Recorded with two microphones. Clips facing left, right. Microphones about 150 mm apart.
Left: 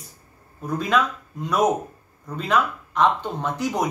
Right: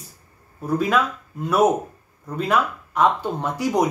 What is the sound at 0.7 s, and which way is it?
Speech, 5° right (ahead or behind).